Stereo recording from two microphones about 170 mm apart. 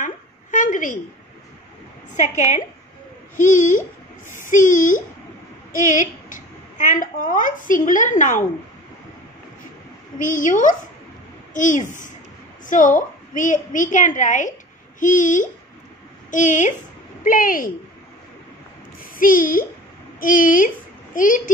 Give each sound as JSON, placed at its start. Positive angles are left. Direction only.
{"t": 0.0, "sound": "a sound", "side_deg": 50}
{"t": 2.1, "sound": "a woman's voice", "side_deg": 45}
{"t": 10.2, "sound": "a woman's voice", "side_deg": 50}
{"t": 19.1, "sound": "a woman's voice", "side_deg": 55}